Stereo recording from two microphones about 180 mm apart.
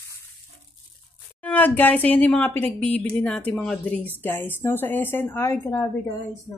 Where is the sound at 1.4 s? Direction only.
10° left (ahead or behind).